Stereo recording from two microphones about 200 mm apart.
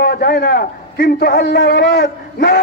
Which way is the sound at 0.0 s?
55° left (ahead or behind).